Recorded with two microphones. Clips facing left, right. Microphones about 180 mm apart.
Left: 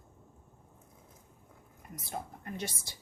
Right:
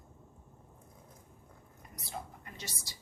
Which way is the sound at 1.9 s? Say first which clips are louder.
Left 3 dB; 50° left (ahead or behind).